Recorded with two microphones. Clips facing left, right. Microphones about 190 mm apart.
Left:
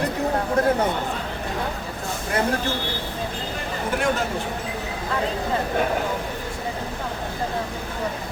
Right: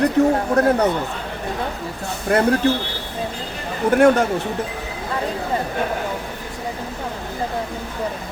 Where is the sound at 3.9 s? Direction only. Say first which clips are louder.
Right 10 dB; 70° right (ahead or behind).